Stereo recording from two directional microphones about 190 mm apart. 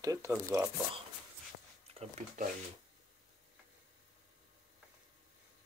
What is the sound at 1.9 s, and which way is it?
Speech, 35° right (ahead or behind).